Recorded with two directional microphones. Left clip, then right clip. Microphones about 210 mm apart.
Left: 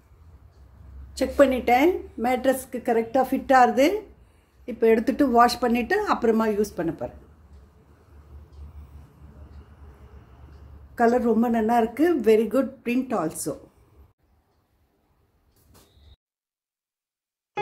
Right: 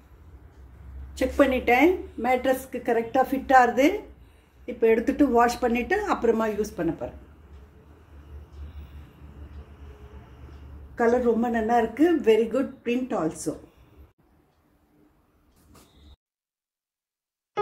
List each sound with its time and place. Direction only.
1.1 s a woman's voice: 40° left (ahead or behind)
11.0 s a woman's voice: 50° left (ahead or behind)